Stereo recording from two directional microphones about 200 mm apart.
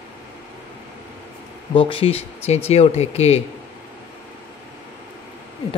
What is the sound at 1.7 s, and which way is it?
Speech, 25° left (ahead or behind).